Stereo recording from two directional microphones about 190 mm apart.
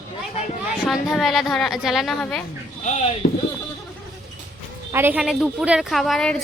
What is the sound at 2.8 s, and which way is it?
Speech, 40° left (ahead or behind).